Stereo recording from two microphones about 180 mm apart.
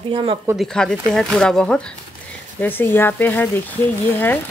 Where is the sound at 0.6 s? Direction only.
5° left (ahead or behind).